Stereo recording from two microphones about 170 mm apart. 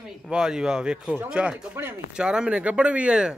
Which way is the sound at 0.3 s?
5° right (ahead or behind).